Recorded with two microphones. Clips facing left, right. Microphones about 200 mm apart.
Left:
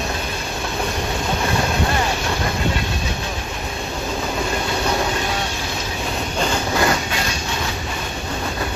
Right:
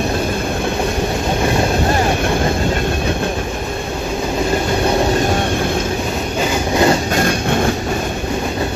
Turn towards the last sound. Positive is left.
turn(degrees=-55)  # may be behind; listen again after turning